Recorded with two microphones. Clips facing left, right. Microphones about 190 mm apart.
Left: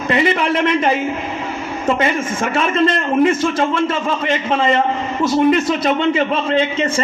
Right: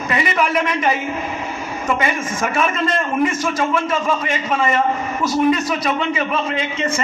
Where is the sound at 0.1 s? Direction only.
30° left (ahead or behind).